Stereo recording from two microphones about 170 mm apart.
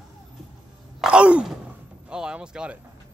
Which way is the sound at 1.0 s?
5° right (ahead or behind).